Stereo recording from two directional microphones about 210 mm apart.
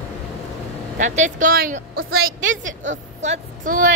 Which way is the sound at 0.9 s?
35° right (ahead or behind).